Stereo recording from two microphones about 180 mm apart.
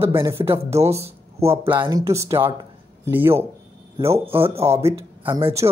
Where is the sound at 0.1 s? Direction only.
15° right (ahead or behind).